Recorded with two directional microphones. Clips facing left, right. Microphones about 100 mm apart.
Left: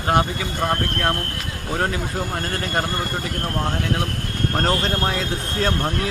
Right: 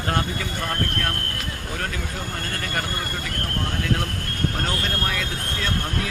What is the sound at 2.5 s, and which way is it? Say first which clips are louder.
Speech: left 4 dB; 25° left (ahead or behind).